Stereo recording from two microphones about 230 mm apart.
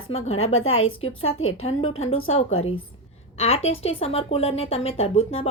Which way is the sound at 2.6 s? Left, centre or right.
Left.